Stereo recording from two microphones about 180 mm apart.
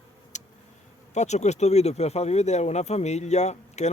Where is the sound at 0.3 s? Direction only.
40° left (ahead or behind).